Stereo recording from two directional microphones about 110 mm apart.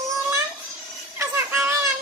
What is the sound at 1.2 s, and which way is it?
Music, 20° right (ahead or behind).